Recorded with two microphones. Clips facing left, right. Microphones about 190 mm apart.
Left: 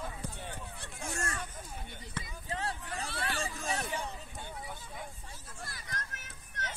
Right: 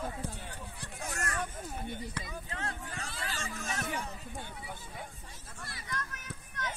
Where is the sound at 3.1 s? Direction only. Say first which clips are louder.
Left 5 dB; 70° left (ahead or behind).